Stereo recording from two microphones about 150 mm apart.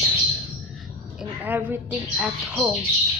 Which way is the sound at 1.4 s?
10° right (ahead or behind).